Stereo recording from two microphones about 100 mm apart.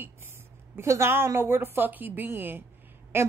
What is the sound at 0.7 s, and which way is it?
A woman's voice, 25° right (ahead or behind).